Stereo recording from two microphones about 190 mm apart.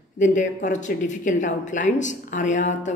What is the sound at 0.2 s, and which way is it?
Speech, 40° left (ahead or behind).